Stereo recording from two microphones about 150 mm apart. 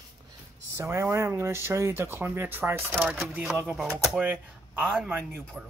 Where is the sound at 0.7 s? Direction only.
20° right (ahead or behind).